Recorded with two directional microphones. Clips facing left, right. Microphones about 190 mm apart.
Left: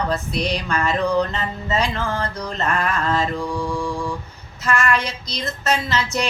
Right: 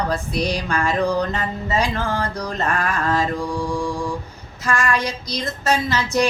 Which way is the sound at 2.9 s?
15° right (ahead or behind).